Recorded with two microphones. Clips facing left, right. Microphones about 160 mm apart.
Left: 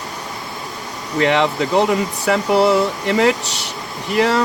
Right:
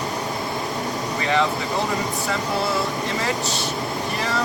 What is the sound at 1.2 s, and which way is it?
Speech, 75° left (ahead or behind).